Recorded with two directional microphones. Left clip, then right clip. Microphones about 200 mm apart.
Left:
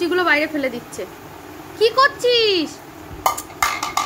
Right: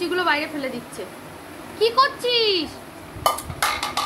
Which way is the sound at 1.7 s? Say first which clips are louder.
Left 3 dB; 20° left (ahead or behind).